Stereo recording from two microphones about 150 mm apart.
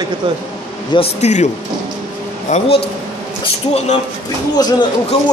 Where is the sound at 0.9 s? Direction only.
45° left (ahead or behind).